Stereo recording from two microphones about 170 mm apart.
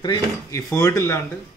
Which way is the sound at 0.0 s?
20° left (ahead or behind).